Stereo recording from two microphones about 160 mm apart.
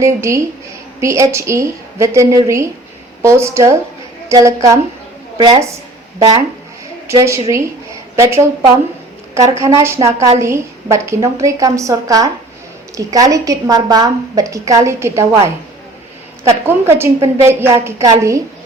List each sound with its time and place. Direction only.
0.0 s a woman's voice: 20° right (ahead or behind)
5.4 s a woman's voice: 35° right (ahead or behind)
7.1 s a woman's voice: 20° right (ahead or behind)
16.4 s a woman's voice: 15° right (ahead or behind)